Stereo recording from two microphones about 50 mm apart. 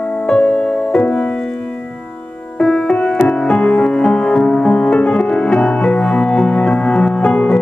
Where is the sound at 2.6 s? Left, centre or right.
Centre.